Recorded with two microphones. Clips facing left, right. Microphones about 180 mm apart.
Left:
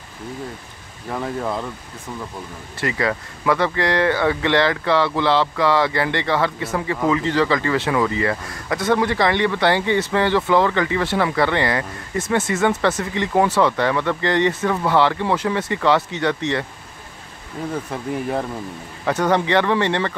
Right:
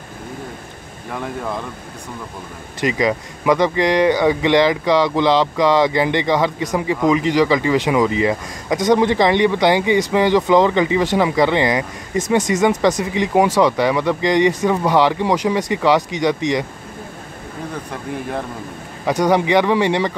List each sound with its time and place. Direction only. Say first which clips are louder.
1.1 s speech: left 1 dB; centre (ahead or behind)
2.8 s speech: right 4 dB; 15° right (ahead or behind)
19.0 s speech: right 3 dB; 10° right (ahead or behind)